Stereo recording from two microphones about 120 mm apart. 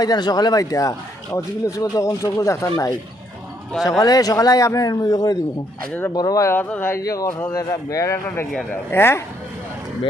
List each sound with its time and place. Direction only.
0.0 s a man's voice: 35° left (ahead or behind)
6.6 s speech: 15° left (ahead or behind)